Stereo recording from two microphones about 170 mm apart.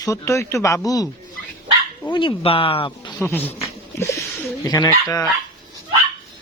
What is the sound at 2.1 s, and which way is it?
Speech, 30° left (ahead or behind).